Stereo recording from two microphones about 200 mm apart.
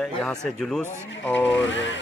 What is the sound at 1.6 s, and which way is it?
Speech, 65° left (ahead or behind).